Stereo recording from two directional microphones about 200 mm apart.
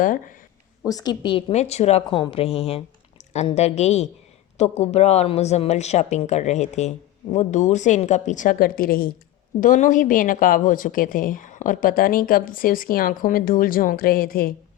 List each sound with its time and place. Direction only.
0.0 s a woman's voice: 40° left (ahead or behind)
0.9 s a woman's voice: 20° left (ahead or behind); by 14.5 s 45° left (ahead or behind)